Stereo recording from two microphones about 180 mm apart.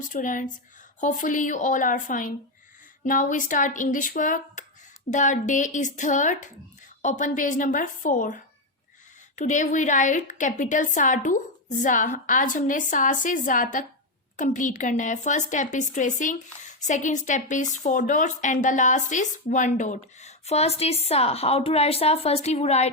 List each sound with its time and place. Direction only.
0.0 s a woman's voice: 45° left (ahead or behind)